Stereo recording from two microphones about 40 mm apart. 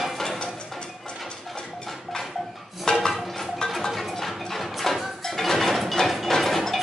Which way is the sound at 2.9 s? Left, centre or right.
Centre.